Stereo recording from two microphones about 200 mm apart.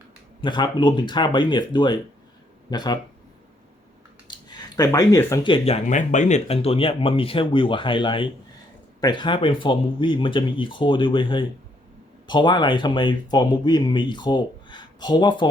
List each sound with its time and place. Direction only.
0.4 s speech: 25° left (ahead or behind)
4.3 s a sound: 20° left (ahead or behind)
4.8 s speech: 15° left (ahead or behind)